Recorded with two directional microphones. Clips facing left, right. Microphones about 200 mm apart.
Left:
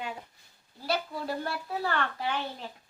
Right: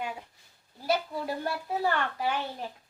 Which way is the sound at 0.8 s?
15° right (ahead or behind).